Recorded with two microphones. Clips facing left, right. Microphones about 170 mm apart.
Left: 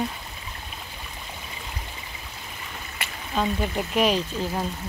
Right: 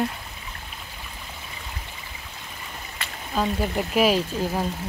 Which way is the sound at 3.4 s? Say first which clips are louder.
Right 1 dB; 5° right (ahead or behind).